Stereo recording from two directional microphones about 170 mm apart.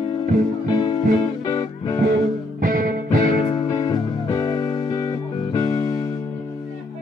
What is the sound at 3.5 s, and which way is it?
Music, 25° left (ahead or behind).